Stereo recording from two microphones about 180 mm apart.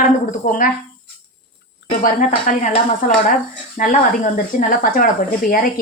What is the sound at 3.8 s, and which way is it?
A woman's voice, 45° left (ahead or behind).